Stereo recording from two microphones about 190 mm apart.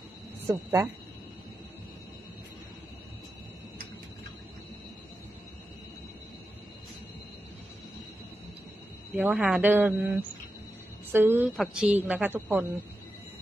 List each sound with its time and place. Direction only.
0.5 s a woman's voice: 15° right (ahead or behind)
9.1 s a woman's voice: 10° right (ahead or behind)